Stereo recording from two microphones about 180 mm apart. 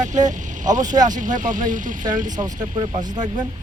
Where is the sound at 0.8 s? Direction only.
20° right (ahead or behind).